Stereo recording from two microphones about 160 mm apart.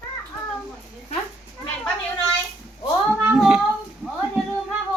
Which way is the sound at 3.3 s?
5° right (ahead or behind).